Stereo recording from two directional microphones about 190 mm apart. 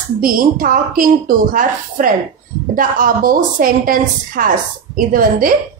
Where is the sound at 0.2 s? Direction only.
45° right (ahead or behind).